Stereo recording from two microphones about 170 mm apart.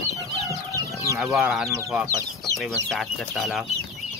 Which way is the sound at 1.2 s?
5° right (ahead or behind).